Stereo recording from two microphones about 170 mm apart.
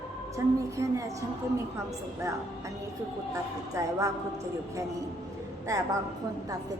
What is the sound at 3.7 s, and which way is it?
Speech, 20° right (ahead or behind).